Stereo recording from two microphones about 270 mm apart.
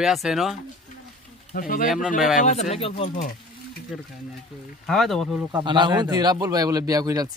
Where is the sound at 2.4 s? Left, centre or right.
Left.